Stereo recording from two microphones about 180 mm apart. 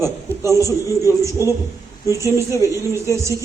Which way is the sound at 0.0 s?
15° right (ahead or behind).